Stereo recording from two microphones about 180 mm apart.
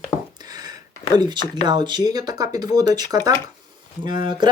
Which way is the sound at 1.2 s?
25° right (ahead or behind).